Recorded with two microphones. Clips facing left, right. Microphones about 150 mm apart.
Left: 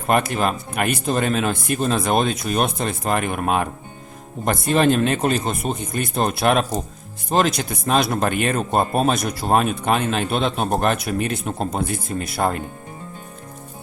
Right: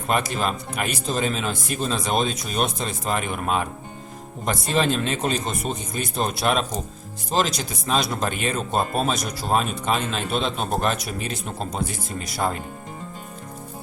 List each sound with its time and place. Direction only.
0.1 s speech: 55° left (ahead or behind)